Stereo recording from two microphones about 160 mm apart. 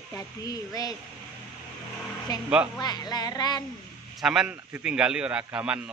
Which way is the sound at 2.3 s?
25° left (ahead or behind).